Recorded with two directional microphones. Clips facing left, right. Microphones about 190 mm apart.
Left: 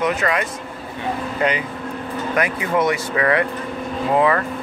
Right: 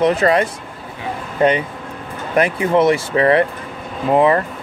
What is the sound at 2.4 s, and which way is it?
Speech, 30° right (ahead or behind).